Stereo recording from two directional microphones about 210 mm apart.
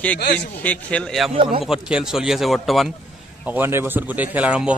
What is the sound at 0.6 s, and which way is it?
Speech, 5° left (ahead or behind).